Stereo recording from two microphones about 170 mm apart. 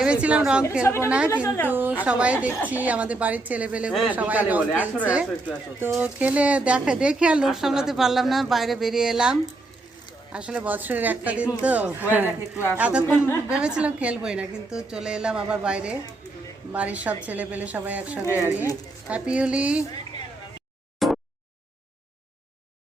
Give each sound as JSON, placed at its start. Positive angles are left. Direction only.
{"t": 0.0, "sound": "a woman's voice", "side_deg": -5}
{"t": 0.9, "sound": "a woman's voice", "side_deg": 15}
{"t": 1.6, "sound": "a woman's voice", "side_deg": -10}
{"t": 13.1, "sound": "a woman's voice", "side_deg": 15}
{"t": 13.5, "sound": "a woman's voice", "side_deg": -5}
{"t": 18.3, "sound": "a woman's voice", "side_deg": 15}
{"t": 19.0, "sound": "a woman's voice", "side_deg": -5}
{"t": 21.0, "sound": "a sound", "side_deg": 0}